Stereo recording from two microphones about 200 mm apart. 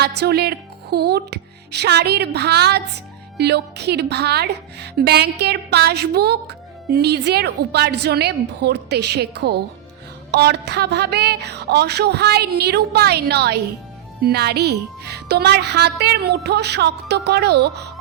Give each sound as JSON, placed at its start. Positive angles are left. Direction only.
{"t": 0.0, "sound": "a woman's voice", "side_deg": -55}